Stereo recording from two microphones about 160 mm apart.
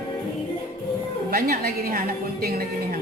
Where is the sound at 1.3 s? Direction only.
70° right (ahead or behind).